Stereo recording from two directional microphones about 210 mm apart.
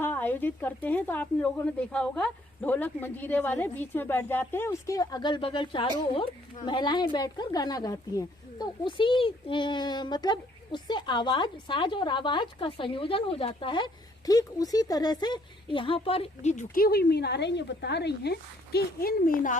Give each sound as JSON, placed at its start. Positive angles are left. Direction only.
{"t": 0.0, "sound": "speech", "side_deg": 10}